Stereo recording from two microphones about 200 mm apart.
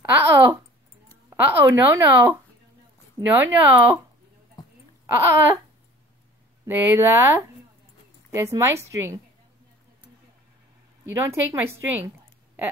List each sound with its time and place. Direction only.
0.0 s a woman's voice: 15° right (ahead or behind)
4.6 s a sound: 20° left (ahead or behind)
5.0 s speech: 10° right (ahead or behind)
6.6 s a woman's voice: 10° right (ahead or behind)
11.1 s a woman's voice: 10° right (ahead or behind)